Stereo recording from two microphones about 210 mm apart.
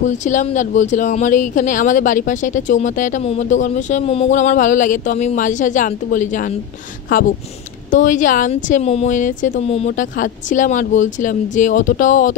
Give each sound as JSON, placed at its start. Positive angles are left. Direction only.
{"t": 0.0, "sound": "speech", "side_deg": 35}